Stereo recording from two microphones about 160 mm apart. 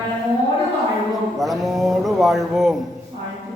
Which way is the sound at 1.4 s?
Centre (ahead or behind).